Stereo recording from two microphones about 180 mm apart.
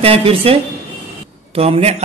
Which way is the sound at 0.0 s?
30° right (ahead or behind).